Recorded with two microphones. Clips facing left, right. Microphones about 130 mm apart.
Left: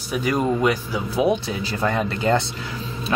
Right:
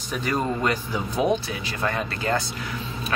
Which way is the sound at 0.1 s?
10° left (ahead or behind).